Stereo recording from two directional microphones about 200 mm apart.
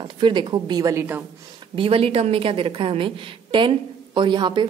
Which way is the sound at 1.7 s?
25° right (ahead or behind).